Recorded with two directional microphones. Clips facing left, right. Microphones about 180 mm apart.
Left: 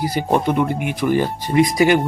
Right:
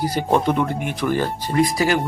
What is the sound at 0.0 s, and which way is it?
Speech, 10° left (ahead or behind).